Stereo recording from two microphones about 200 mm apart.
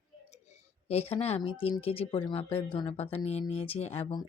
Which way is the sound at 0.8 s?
30° left (ahead or behind).